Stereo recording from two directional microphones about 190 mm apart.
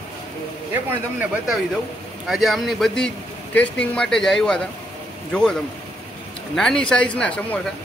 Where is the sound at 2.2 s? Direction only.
Centre (ahead or behind).